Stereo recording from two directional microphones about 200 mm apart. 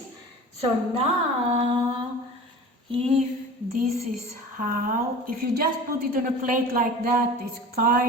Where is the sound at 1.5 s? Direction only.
35° right (ahead or behind).